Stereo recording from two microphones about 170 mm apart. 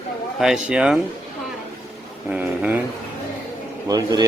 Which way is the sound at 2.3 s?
10° right (ahead or behind).